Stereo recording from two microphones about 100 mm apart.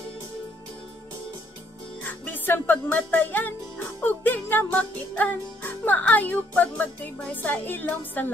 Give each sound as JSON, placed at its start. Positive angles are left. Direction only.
{"t": 2.2, "sound": "music", "side_deg": 20}